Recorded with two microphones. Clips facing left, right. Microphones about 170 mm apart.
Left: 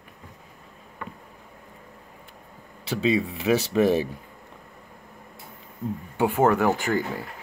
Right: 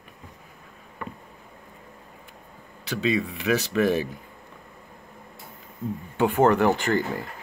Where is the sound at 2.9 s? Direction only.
30° left (ahead or behind).